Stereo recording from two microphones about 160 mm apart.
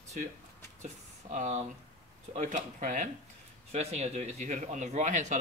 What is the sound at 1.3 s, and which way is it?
A man's voice, 50° right (ahead or behind).